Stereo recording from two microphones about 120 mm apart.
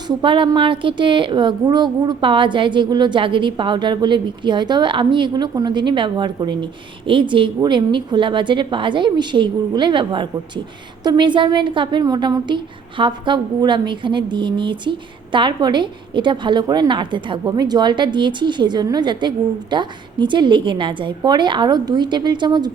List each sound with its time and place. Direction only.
0.1 s a woman's voice: 45° right (ahead or behind)